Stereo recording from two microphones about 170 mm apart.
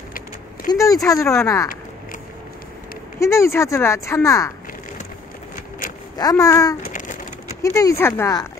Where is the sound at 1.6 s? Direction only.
55° left (ahead or behind).